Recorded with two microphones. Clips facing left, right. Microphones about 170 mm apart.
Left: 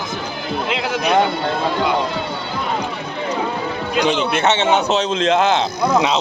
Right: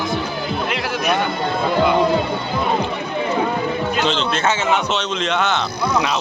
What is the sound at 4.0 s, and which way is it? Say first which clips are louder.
A man's voice: left 2 dB; 15° left (ahead or behind).